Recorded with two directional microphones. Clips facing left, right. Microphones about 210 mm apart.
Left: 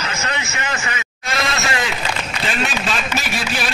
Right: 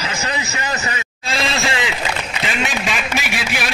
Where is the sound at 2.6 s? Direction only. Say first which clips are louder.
Even; 10° right (ahead or behind).